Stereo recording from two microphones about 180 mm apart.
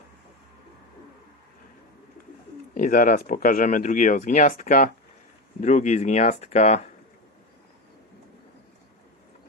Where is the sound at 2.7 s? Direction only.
50° left (ahead or behind).